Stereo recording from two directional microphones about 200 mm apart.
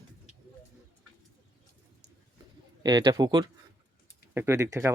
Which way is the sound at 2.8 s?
20° right (ahead or behind).